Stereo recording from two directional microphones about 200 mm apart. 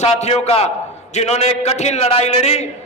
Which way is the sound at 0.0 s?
30° left (ahead or behind).